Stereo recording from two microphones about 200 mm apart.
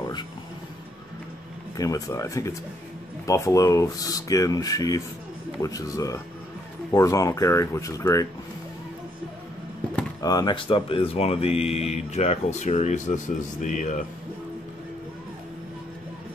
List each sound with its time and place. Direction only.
1.8 s speech: 15° left (ahead or behind)
10.2 s speech: 20° left (ahead or behind); by 14.0 s 40° left (ahead or behind)